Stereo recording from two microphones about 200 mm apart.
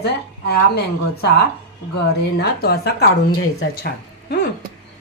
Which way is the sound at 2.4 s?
50° left (ahead or behind).